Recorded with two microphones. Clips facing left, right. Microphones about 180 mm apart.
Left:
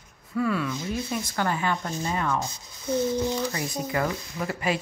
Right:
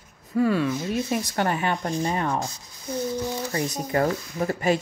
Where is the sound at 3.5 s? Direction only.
30° right (ahead or behind).